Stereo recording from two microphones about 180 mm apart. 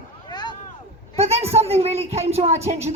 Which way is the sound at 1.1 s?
35° right (ahead or behind).